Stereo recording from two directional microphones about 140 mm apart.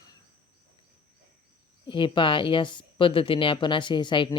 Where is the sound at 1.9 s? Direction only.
35° left (ahead or behind).